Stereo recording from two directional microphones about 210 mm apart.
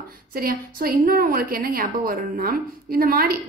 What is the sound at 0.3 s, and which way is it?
A woman's voice, 45° right (ahead or behind).